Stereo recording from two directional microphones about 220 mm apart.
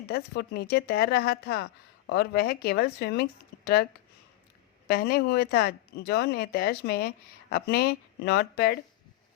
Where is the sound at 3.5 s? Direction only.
50° left (ahead or behind).